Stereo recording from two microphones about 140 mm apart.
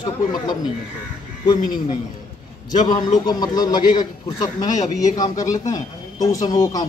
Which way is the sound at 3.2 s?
30° left (ahead or behind).